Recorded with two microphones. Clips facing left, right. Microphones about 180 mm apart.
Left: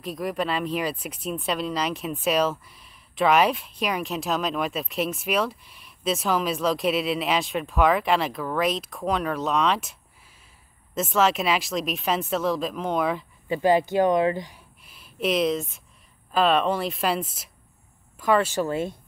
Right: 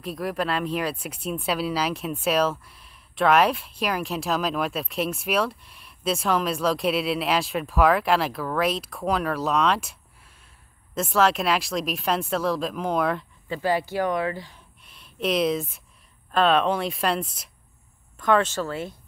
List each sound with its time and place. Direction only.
0.0 s speech: centre (ahead or behind)
13.5 s speech: 20° left (ahead or behind)
14.8 s a sound: 5° left (ahead or behind)
16.3 s speech: centre (ahead or behind); by 18.9 s 20° left (ahead or behind)